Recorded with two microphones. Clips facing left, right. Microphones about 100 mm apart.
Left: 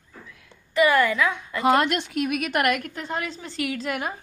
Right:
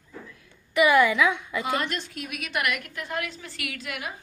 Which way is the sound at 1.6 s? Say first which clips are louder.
Left 8 dB; 80° left.